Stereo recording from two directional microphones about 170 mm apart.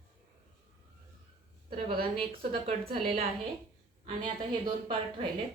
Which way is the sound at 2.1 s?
35° right (ahead or behind).